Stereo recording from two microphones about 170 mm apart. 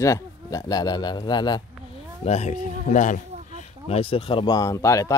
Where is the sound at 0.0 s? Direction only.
20° left (ahead or behind).